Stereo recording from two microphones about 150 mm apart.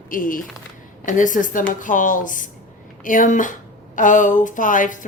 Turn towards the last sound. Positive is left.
turn(degrees=60)  # may be behind; listen again after turning